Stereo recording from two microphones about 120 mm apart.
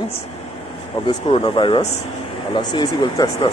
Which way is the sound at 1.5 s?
40° left (ahead or behind).